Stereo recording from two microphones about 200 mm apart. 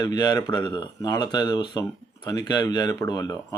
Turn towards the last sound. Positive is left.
turn(degrees=20)  # may be behind; listen again after turning